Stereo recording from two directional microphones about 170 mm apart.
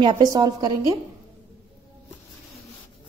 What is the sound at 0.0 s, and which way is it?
Speech, 25° right (ahead or behind).